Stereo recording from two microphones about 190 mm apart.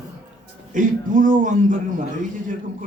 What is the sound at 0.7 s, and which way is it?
A man's voice, 45° right (ahead or behind).